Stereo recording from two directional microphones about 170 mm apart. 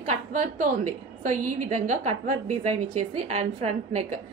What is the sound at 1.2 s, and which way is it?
A woman's voice, 45° right (ahead or behind).